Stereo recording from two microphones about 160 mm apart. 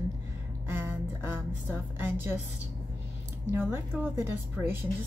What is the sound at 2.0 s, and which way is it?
Speech, 15° right (ahead or behind).